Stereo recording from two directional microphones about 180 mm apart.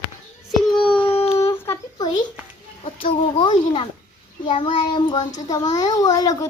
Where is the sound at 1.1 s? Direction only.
35° left (ahead or behind).